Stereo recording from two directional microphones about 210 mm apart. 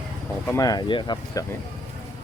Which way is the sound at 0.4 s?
15° left (ahead or behind).